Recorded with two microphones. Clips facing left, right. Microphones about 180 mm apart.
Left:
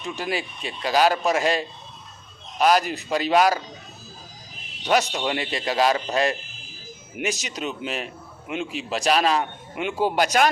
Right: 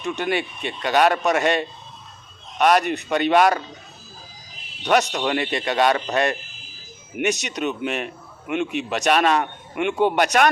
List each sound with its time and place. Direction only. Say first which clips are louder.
0.0 s speech: right 4 dB; 60° right (ahead or behind)
4.8 s a man's voice: right 2 dB; 65° right (ahead or behind)